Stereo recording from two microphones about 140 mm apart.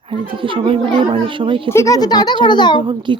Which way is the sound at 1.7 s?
20° left (ahead or behind).